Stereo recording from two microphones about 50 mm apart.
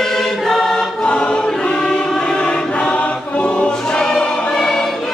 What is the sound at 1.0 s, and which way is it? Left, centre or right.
Choir, left.